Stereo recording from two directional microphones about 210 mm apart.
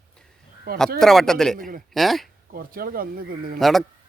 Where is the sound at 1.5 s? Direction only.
40° right (ahead or behind).